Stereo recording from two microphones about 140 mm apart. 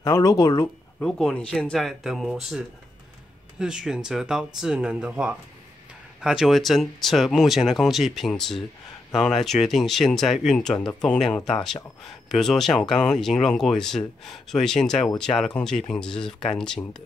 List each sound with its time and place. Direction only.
0.0 s speech: 25° left (ahead or behind)
0.9 s speech: 5° left (ahead or behind)